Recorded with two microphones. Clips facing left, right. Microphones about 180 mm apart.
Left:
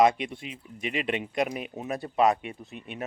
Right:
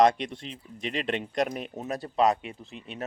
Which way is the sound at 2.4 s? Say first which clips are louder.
Left 2 dB; 30° right (ahead or behind).